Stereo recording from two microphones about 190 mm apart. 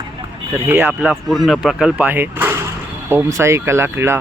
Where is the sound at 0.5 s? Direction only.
10° right (ahead or behind).